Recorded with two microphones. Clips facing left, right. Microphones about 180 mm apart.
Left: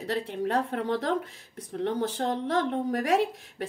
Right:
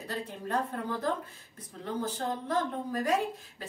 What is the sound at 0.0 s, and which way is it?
Speech, 75° left (ahead or behind).